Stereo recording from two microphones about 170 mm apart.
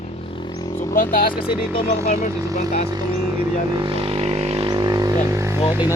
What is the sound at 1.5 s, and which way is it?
Speech, 30° left (ahead or behind).